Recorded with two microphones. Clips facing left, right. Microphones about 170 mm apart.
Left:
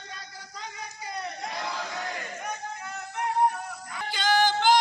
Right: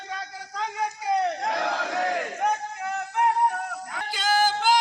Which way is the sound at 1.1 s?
70° right (ahead or behind).